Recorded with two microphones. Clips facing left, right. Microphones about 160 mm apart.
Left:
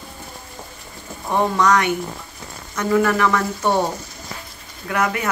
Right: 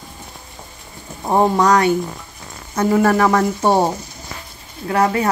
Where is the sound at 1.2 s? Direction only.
35° right (ahead or behind).